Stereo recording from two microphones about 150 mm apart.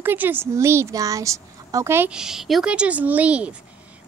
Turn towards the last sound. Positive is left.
turn(degrees=-10)  # may be behind; listen again after turning